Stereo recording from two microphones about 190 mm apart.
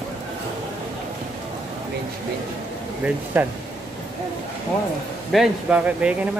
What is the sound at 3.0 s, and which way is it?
Speech, 10° right (ahead or behind).